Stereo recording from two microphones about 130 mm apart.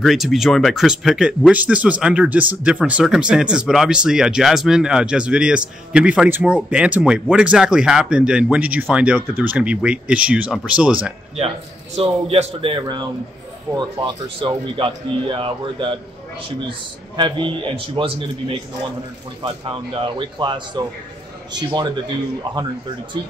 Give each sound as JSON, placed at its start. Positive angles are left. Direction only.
{"t": 0.0, "sound": "speech", "side_deg": 0}
{"t": 12.0, "sound": "a man's voice", "side_deg": -50}
{"t": 12.7, "sound": "speech", "side_deg": -35}
{"t": 17.2, "sound": "speech", "side_deg": -40}